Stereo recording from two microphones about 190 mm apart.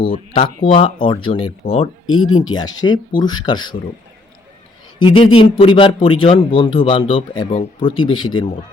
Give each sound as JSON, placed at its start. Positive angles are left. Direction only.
{"t": 0.0, "sound": "speech", "side_deg": 30}
{"t": 1.6, "sound": "speech", "side_deg": 50}
{"t": 2.0, "sound": "speech", "side_deg": 90}
{"t": 2.8, "sound": "speech", "side_deg": 20}
{"t": 5.0, "sound": "speech", "side_deg": 25}